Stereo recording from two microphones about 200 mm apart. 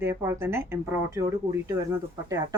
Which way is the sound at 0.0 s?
10° right (ahead or behind).